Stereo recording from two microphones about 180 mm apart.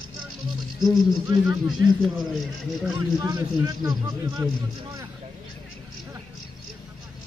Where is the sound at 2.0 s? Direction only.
Centre (ahead or behind).